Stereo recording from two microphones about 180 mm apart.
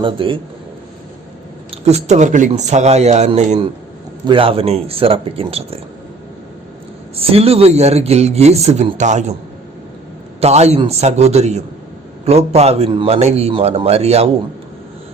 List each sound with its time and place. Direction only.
0.0 s a man's voice: 30° right (ahead or behind)
1.7 s speech: 35° right (ahead or behind)
7.2 s speech: 30° right (ahead or behind)
10.4 s speech: 35° right (ahead or behind)